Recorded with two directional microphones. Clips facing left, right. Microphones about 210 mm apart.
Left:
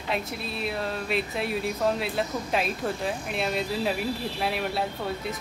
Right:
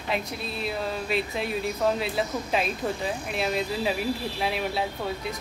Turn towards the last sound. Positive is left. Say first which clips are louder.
# even
turn(degrees=0)  # may be behind; listen again after turning